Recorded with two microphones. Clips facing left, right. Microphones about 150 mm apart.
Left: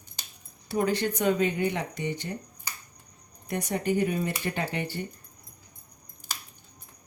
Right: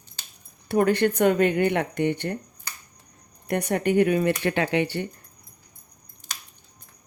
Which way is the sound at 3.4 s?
65° right (ahead or behind).